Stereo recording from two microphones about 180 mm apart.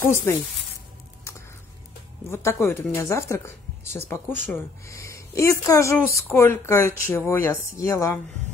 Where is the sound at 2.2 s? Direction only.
15° left (ahead or behind).